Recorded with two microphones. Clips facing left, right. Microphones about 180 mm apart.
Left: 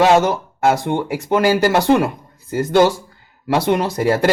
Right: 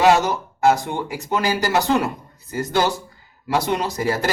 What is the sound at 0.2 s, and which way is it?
Speech, 55° left (ahead or behind).